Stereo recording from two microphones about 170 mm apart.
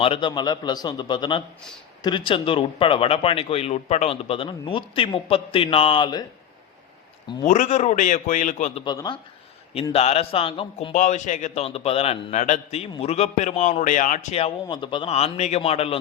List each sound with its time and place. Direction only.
0.0 s a man's voice: 30° left (ahead or behind)
7.4 s a man's voice: 45° left (ahead or behind)
8.8 s a man's voice: 25° left (ahead or behind)
9.9 s speech: 40° left (ahead or behind)